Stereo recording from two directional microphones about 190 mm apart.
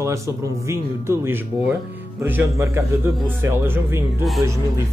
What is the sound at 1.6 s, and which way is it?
Speech, centre (ahead or behind).